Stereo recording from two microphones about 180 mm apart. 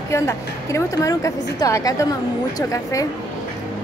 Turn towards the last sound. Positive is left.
turn(degrees=20)  # may be behind; listen again after turning